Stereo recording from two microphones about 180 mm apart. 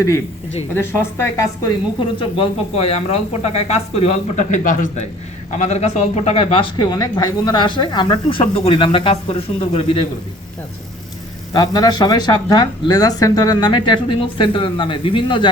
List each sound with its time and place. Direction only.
0.7 s a woman's voice: 15° left (ahead or behind); by 10.1 s 30° left (ahead or behind)
11.5 s speech: 20° left (ahead or behind)